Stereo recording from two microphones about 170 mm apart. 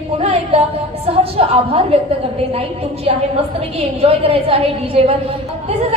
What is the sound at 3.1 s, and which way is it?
A woman's voice, 35° right (ahead or behind).